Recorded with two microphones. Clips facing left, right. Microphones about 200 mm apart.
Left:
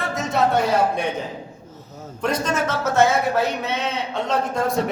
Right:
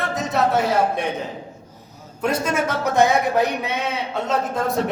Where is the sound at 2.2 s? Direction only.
10° right (ahead or behind).